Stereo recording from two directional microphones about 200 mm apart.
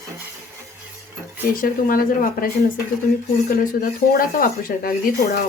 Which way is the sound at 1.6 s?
45° left (ahead or behind).